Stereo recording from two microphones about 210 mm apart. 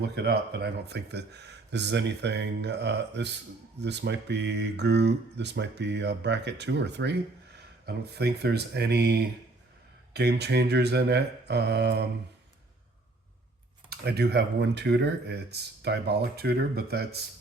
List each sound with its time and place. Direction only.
0.0 s speech: 50° right (ahead or behind)
14.0 s speech: 50° right (ahead or behind)